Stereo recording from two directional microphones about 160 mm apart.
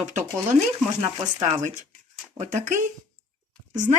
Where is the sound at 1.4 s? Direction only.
50° right (ahead or behind).